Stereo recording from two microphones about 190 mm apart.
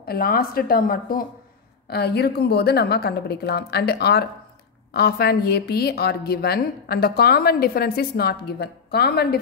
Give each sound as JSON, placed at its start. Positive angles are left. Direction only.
{"t": 0.0, "sound": "a woman's voice", "side_deg": 55}